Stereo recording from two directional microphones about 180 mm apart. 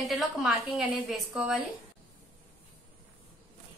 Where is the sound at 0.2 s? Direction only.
Centre (ahead or behind).